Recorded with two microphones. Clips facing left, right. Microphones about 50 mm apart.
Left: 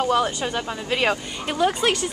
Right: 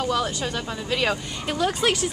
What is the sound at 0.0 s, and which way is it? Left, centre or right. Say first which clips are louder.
A woman's voice: left 3 dB; centre.